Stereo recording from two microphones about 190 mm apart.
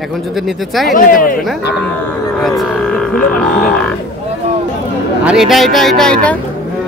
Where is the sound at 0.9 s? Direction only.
45° left (ahead or behind).